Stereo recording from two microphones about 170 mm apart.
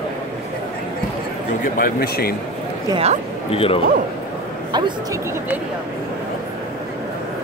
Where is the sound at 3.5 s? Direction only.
35° left (ahead or behind).